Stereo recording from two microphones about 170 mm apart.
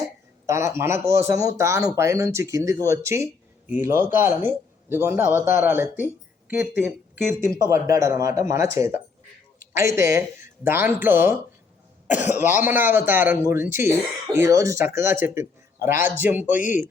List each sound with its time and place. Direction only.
0.4 s speech: 15° right (ahead or behind)
12.0 s cough: 45° left (ahead or behind)
12.6 s speech: 10° right (ahead or behind)